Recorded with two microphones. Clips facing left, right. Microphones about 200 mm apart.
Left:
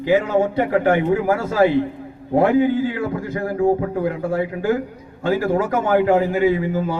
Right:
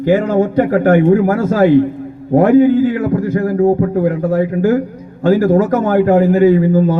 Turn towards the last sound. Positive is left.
turn(degrees=-45)  # may be behind; listen again after turning